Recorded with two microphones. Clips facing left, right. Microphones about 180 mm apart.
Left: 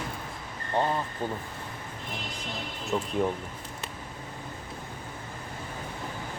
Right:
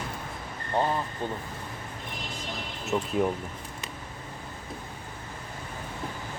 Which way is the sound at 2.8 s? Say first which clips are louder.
Right 2 dB; centre (ahead or behind).